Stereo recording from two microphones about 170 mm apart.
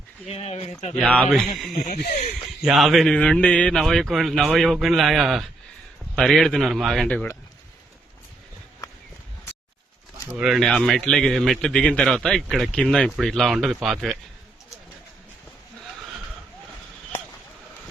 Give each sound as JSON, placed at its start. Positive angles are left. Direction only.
{"t": 0.3, "sound": "speech", "side_deg": 35}
{"t": 0.9, "sound": "a man's voice", "side_deg": 10}
{"t": 1.7, "sound": "speech", "side_deg": 45}
{"t": 2.6, "sound": "a man's voice", "side_deg": 0}
{"t": 8.8, "sound": "walk", "side_deg": 20}
{"t": 10.2, "sound": "a man's voice", "side_deg": -5}